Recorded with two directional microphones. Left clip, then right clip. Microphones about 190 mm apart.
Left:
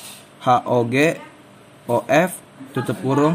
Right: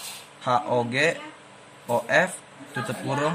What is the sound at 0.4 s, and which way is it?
A man's voice, 30° left (ahead or behind).